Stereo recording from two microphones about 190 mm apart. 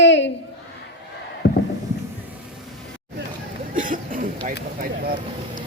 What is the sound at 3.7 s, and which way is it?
Speech, 45° right (ahead or behind).